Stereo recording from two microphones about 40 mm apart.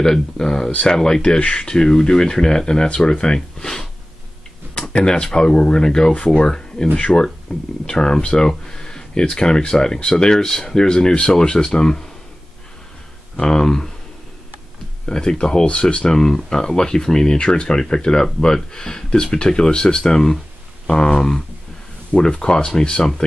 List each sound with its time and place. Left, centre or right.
0.0 s speech: centre
5.0 s speech: left
6.1 s speech: left
13.4 s speech: centre
15.0 s speech: left
16.1 s speech: centre